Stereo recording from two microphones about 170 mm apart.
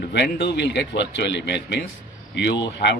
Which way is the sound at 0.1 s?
85° left.